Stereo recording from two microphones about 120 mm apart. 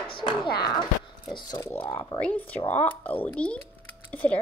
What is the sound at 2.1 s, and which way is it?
Speech, 10° left (ahead or behind).